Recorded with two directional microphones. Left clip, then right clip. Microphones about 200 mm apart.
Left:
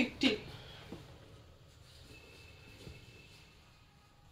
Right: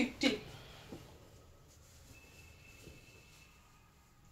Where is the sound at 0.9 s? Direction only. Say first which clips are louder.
Right 1 dB; 20° left (ahead or behind).